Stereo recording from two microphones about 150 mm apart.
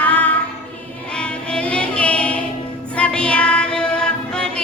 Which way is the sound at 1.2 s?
5° left (ahead or behind).